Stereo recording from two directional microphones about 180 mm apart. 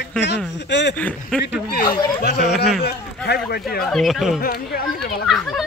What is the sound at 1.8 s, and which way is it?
Speech, 20° left (ahead or behind).